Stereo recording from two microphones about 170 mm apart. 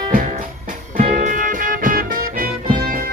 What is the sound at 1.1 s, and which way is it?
Music, 50° right (ahead or behind).